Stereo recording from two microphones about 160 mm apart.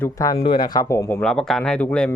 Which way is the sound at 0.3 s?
35° left (ahead or behind).